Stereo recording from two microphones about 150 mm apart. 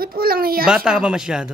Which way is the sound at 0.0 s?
85° right.